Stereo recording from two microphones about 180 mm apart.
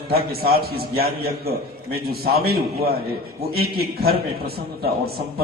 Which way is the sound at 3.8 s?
60° right (ahead or behind).